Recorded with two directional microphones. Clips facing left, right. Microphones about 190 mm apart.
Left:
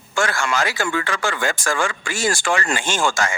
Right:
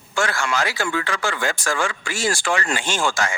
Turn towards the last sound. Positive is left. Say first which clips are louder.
# left 2 dB
turn(degrees=45)  # may be behind; listen again after turning